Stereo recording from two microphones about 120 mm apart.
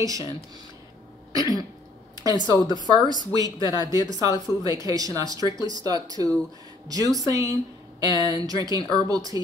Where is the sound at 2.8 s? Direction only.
35° right (ahead or behind).